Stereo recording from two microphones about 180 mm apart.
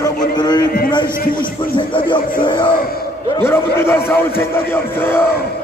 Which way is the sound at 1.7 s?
25° left (ahead or behind).